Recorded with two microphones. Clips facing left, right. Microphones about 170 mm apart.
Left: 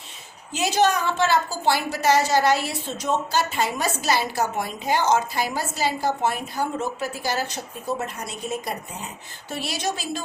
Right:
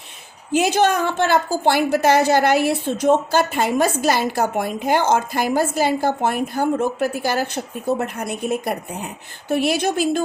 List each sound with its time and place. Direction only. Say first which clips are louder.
0.5 s a woman's voice: right 4 dB; 55° right (ahead or behind)